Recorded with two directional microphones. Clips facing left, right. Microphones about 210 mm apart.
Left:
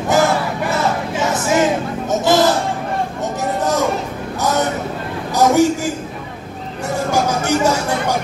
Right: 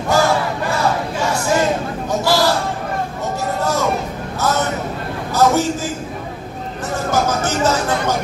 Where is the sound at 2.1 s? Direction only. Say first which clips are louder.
Left 3 dB; 20° left (ahead or behind).